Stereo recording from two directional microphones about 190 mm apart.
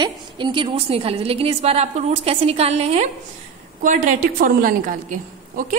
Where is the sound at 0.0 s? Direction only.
25° right (ahead or behind).